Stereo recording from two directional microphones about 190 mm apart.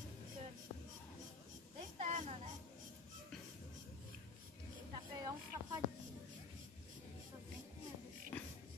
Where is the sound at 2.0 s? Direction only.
35° right (ahead or behind).